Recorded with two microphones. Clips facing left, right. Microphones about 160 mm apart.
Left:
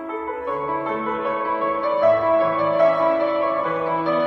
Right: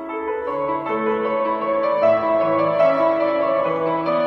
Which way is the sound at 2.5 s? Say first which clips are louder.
Right 1 dB; 15° right (ahead or behind).